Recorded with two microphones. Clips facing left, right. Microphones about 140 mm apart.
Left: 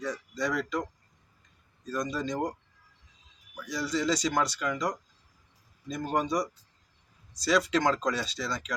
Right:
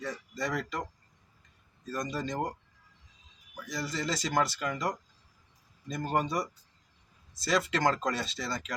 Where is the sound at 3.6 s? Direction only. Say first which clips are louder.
Left 5 dB; centre (ahead or behind).